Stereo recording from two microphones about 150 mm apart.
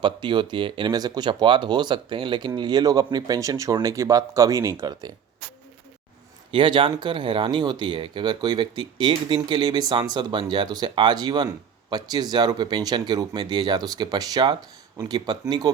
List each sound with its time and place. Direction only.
0.0 s speech: 30° right (ahead or behind)
6.5 s speech: 35° right (ahead or behind)